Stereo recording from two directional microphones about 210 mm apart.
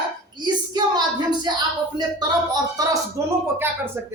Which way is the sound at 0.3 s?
20° right (ahead or behind).